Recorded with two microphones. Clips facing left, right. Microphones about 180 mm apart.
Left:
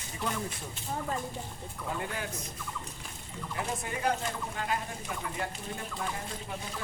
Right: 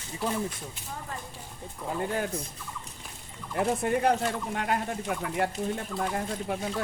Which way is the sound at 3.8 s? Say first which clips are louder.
Right 6 dB; 60° right (ahead or behind).